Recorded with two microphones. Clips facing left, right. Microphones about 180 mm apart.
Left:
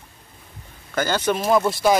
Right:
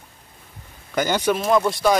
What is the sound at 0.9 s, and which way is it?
Speech, 15° right (ahead or behind).